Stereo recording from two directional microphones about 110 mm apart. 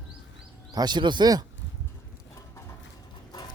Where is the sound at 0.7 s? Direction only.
40° right (ahead or behind).